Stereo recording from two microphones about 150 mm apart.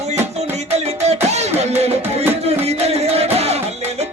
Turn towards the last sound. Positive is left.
turn(degrees=-45)  # may be behind; listen again after turning